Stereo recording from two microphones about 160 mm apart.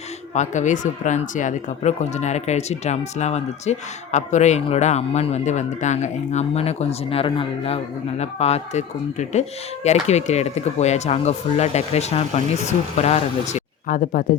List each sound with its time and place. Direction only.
0.3 s speech: 50° left (ahead or behind)